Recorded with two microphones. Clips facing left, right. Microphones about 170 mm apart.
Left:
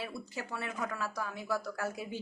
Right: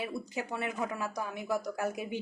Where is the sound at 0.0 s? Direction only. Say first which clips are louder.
Right 4 dB; 15° right (ahead or behind).